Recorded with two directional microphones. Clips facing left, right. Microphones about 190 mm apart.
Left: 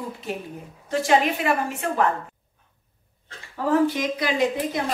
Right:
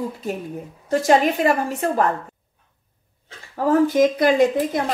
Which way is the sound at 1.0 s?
40° right (ahead or behind).